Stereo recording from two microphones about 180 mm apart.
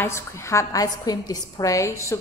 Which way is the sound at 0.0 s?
15° left (ahead or behind).